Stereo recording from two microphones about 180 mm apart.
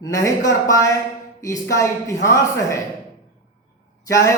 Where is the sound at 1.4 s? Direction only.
20° left (ahead or behind).